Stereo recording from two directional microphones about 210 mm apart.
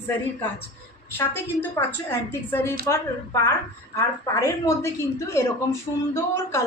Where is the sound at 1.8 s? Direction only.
15° left (ahead or behind).